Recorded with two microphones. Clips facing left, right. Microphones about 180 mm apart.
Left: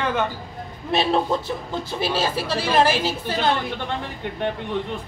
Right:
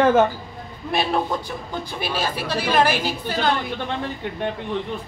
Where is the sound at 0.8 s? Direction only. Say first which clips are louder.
Left 2 dB; 25° left (ahead or behind).